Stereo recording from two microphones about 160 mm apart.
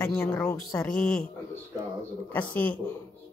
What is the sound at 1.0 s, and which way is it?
Speech, 5° left (ahead or behind).